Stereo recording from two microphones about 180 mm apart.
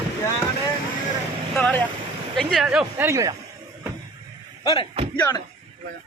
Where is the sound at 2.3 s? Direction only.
Centre (ahead or behind); by 3.4 s 15° right (ahead or behind).